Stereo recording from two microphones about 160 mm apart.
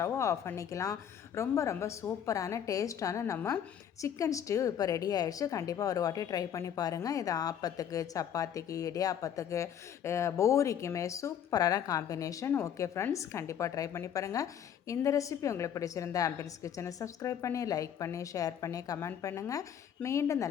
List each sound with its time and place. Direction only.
0.0 s a woman's voice: 20° left (ahead or behind)